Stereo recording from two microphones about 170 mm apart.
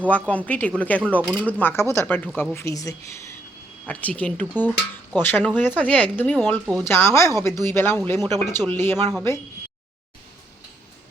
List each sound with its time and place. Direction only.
0.1 s speech: 10° left (ahead or behind)